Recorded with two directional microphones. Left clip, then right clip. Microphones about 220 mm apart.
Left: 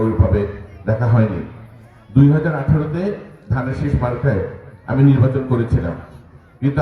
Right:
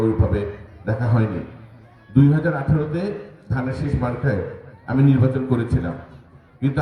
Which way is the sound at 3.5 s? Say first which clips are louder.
Left 3 dB; 45° right (ahead or behind).